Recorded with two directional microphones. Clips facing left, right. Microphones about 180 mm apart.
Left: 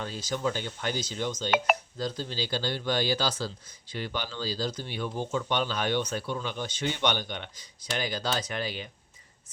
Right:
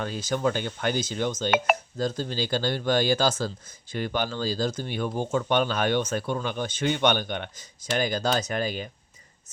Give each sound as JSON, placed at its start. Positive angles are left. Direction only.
{"t": 0.0, "sound": "speech", "side_deg": -55}
{"t": 1.5, "sound": "speech", "side_deg": 0}
{"t": 1.7, "sound": "speech", "side_deg": -50}